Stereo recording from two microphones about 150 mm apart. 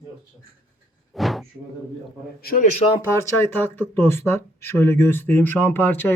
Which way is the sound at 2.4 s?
80° left.